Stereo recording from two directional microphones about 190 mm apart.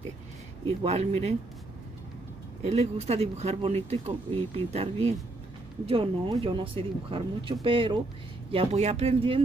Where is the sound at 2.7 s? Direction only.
35° right (ahead or behind).